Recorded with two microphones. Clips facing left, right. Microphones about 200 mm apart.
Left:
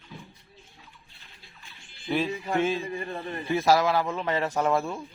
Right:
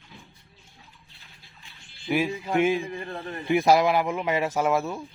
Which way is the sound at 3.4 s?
15° right (ahead or behind).